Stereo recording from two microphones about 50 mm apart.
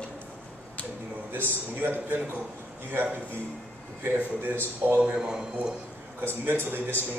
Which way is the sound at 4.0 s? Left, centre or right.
Right.